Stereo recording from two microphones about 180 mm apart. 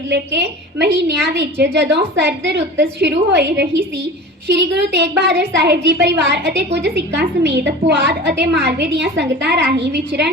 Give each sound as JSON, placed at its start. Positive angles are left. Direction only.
{"t": 0.1, "sound": "a woman's voice", "side_deg": -70}
{"t": 3.0, "sound": "a woman's voice", "side_deg": -70}